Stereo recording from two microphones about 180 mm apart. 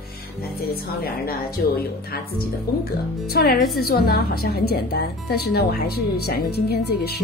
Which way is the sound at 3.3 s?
55° left (ahead or behind).